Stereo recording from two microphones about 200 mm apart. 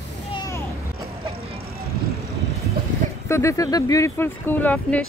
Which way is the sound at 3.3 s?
15° left (ahead or behind).